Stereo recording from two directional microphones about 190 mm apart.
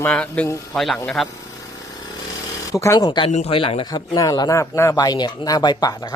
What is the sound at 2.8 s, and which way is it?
Speech, 15° left (ahead or behind).